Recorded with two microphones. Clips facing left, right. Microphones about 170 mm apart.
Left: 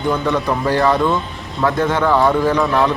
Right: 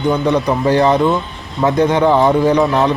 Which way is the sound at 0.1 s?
20° right (ahead or behind).